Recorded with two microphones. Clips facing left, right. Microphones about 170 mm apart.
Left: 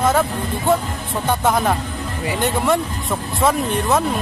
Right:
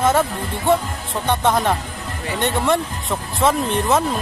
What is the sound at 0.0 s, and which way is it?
Speech, centre (ahead or behind).